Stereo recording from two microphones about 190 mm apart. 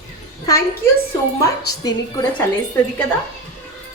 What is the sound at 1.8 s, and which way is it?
Speech, 20° left (ahead or behind).